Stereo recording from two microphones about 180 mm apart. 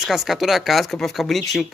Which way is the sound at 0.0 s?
Centre (ahead or behind).